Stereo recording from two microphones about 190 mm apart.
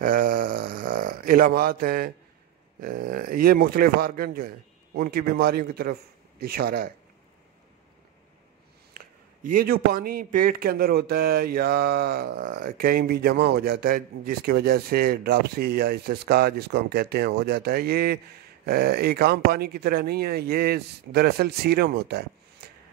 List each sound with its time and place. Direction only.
0.0 s a sound: 45° right (ahead or behind)
2.8 s a man's voice: 50° right (ahead or behind)
8.9 s a man's voice: 45° right (ahead or behind)